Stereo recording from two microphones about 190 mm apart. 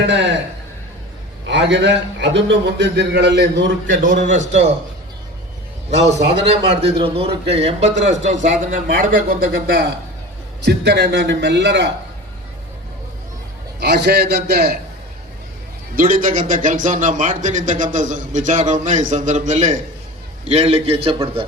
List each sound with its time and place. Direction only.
0.0 s a man's voice: 70° right (ahead or behind)
1.5 s a man's voice: 65° right (ahead or behind)
3.8 s a man's voice: 40° right (ahead or behind)
5.9 s a man's voice: 35° right (ahead or behind); by 11.9 s 65° right (ahead or behind)
13.7 s a man's voice: 60° right (ahead or behind)
16.0 s a man's voice: 45° right (ahead or behind)